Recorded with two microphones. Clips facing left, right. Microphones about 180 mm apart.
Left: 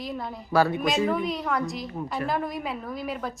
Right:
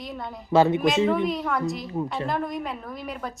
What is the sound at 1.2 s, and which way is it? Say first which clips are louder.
A woman's voice: right 2 dB; centre (ahead or behind).